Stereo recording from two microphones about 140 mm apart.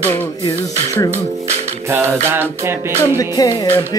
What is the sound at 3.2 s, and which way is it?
Music, 25° left (ahead or behind).